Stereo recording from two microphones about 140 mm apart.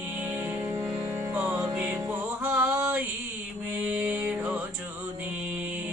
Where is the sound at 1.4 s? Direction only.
20° right (ahead or behind).